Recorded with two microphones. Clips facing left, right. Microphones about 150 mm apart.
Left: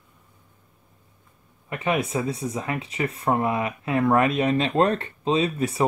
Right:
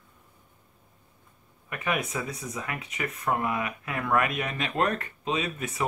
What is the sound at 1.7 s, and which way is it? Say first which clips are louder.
Speech: left 5 dB; 25° left (ahead or behind).